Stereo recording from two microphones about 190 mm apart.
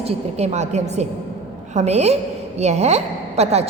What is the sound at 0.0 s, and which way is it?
A woman's voice, 35° right (ahead or behind).